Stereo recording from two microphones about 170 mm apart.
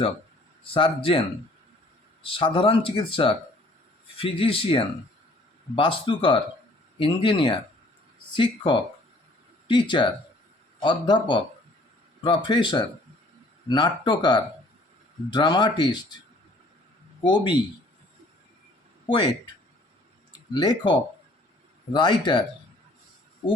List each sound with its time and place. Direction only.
0.7 s speech: 30° left (ahead or behind)
2.2 s speech: 30° left (ahead or behind)
17.2 s speech: 25° left (ahead or behind)
19.0 s a man's voice: 30° left (ahead or behind)
20.3 s speech: 25° left (ahead or behind)
21.9 s speech: 25° left (ahead or behind)